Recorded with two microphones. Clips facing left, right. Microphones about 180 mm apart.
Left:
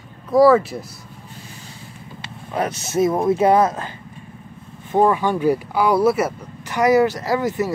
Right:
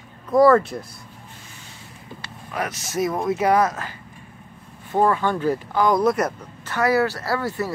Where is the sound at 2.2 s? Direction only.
25° left (ahead or behind).